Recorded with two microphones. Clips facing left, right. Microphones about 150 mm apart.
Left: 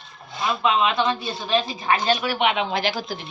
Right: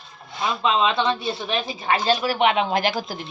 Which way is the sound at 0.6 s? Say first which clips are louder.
Even; 25° right (ahead or behind).